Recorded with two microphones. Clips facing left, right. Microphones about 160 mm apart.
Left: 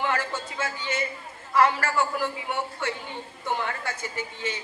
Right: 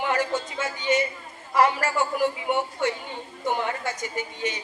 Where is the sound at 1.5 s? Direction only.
15° right (ahead or behind).